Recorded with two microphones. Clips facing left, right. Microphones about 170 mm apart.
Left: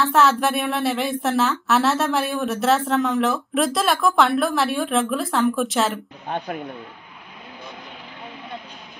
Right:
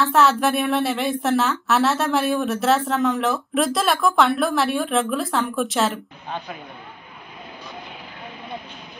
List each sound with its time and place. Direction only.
0.1 s a woman's voice: centre (ahead or behind)
6.2 s speech: 55° left (ahead or behind)